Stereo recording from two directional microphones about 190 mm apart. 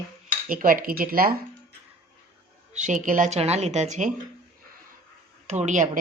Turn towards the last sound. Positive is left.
turn(degrees=-40)  # may be behind; listen again after turning